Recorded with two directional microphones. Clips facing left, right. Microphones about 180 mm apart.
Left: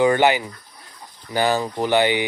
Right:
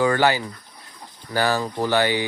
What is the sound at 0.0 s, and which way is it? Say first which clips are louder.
Speech: left 3 dB; 20° left (ahead or behind).